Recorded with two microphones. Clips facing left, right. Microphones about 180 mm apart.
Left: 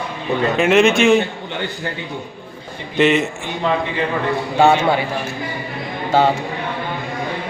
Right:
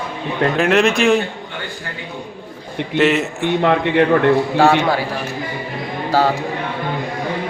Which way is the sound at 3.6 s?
65° right (ahead or behind).